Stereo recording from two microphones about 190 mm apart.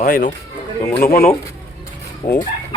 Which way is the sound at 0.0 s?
45° left (ahead or behind).